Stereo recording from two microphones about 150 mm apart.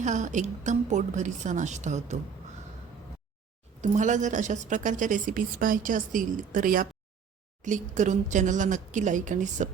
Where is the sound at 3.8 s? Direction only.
55° right (ahead or behind).